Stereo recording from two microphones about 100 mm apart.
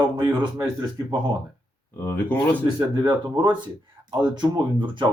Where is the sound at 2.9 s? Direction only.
50° right (ahead or behind).